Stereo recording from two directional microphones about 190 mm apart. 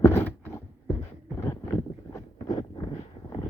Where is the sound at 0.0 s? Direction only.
10° left (ahead or behind).